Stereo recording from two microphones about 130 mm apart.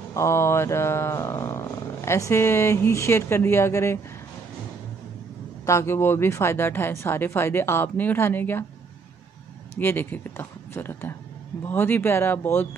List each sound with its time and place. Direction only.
0.1 s speech: 20° left (ahead or behind)
5.7 s speech: 20° left (ahead or behind)
9.8 s speech: 15° left (ahead or behind)